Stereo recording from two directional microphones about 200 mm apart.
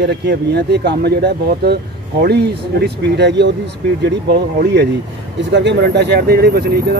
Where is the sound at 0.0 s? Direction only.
55° right (ahead or behind).